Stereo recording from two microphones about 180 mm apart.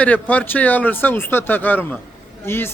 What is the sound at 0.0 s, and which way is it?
A man's voice, 10° left (ahead or behind).